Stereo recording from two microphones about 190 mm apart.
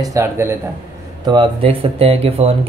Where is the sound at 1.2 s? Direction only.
25° right (ahead or behind).